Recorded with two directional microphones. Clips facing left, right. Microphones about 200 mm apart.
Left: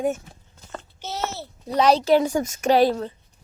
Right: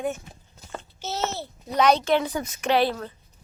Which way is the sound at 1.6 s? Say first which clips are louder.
Left 3 dB; 30° left (ahead or behind).